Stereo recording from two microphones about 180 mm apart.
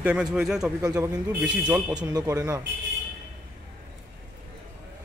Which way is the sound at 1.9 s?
20° right (ahead or behind).